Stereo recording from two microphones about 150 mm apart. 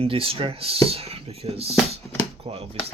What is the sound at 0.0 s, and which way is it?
Speech, 40° right (ahead or behind).